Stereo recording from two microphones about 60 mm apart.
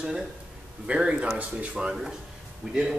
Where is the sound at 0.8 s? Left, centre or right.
Centre.